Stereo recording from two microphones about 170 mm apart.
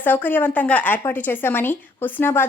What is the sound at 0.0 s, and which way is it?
Speech, 10° left (ahead or behind).